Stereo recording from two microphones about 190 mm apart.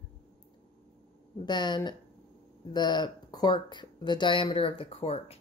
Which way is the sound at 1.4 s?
25° left (ahead or behind).